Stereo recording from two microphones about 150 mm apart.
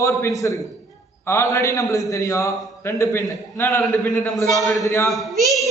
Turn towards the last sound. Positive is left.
turn(degrees=0)  # may be behind; listen again after turning